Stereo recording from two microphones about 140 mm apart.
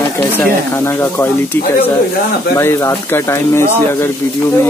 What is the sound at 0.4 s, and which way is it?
Speech, 15° left (ahead or behind).